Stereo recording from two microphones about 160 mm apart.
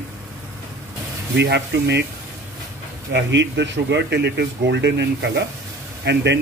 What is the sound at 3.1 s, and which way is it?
Speech, 90° right.